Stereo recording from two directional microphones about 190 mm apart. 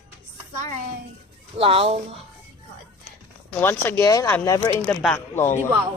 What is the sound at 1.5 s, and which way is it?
Speech, 30° right (ahead or behind).